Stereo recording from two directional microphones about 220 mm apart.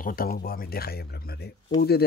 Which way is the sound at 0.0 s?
40° left (ahead or behind).